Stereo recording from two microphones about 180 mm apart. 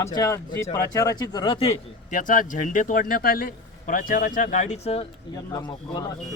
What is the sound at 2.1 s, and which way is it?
A man's voice, 50° left (ahead or behind).